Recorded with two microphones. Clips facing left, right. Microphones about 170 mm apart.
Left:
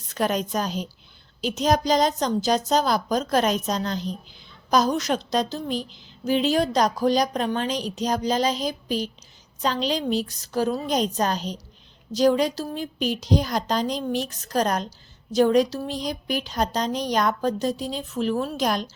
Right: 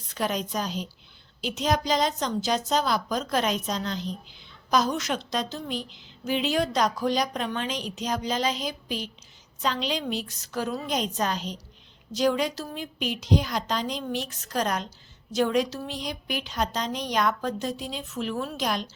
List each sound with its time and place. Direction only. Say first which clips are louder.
0.1 s a woman's voice: left 4 dB; 50° left (ahead or behind)